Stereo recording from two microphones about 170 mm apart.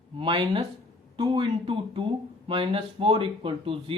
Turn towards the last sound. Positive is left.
turn(degrees=-35)  # may be behind; listen again after turning